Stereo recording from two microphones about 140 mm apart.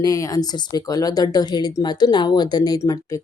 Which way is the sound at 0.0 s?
25° left (ahead or behind).